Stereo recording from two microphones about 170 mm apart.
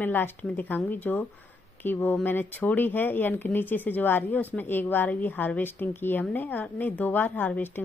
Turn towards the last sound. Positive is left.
turn(degrees=10)  # may be behind; listen again after turning